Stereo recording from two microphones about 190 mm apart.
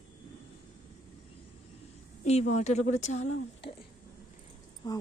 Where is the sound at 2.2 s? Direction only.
35° left (ahead or behind).